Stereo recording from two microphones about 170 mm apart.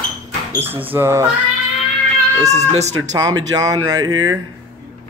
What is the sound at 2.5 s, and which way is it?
Speech, 40° right (ahead or behind).